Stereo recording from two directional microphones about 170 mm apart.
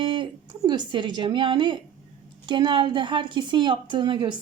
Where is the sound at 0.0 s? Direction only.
30° right (ahead or behind).